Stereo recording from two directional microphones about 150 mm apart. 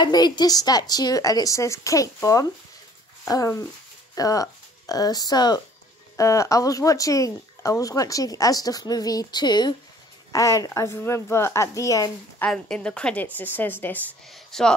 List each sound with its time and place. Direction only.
0.0 s speech: 30° left (ahead or behind)
12.4 s a woman's voice: 5° left (ahead or behind)
14.3 s speech: 5° left (ahead or behind)